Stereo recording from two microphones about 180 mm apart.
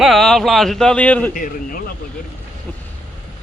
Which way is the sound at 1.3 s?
50° left (ahead or behind).